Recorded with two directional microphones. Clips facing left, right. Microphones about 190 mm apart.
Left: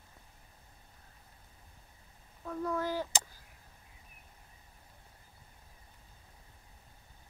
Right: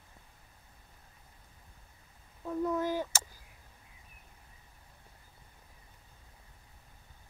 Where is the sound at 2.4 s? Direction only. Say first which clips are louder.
Right 3 dB; 20° right (ahead or behind).